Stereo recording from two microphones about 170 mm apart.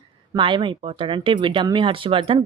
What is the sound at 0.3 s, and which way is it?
Speech, 30° right (ahead or behind).